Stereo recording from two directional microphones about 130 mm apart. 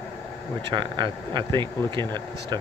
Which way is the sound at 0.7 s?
35° right (ahead or behind).